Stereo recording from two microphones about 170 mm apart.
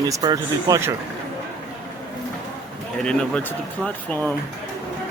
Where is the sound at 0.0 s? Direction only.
20° right (ahead or behind).